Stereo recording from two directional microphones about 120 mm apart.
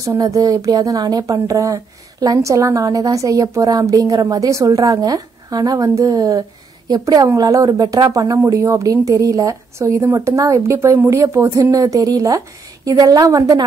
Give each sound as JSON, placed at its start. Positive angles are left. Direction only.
{"t": 0.0, "sound": "a woman's voice", "side_deg": -25}